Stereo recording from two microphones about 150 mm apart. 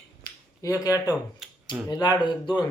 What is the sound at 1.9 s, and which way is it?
Speech, 30° left (ahead or behind).